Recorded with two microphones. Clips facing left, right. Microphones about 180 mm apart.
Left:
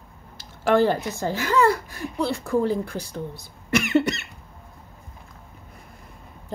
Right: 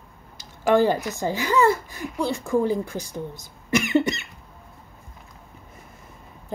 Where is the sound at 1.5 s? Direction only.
Centre (ahead or behind).